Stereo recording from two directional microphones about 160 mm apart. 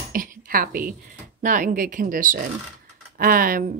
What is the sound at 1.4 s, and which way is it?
Speech, 50° right (ahead or behind).